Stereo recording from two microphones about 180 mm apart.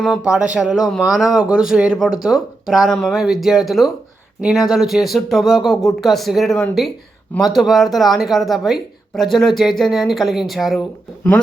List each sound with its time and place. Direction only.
0.0 s speech: 5° right (ahead or behind)